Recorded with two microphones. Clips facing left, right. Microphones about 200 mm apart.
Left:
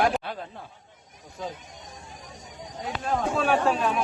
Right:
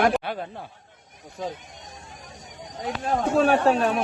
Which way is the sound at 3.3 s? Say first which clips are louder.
Right 6 dB; 40° right (ahead or behind).